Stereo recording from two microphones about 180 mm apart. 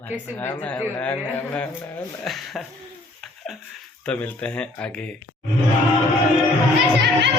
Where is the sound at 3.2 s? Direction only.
Centre (ahead or behind).